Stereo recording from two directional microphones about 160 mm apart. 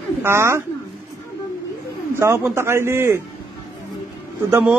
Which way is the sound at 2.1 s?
15° right (ahead or behind).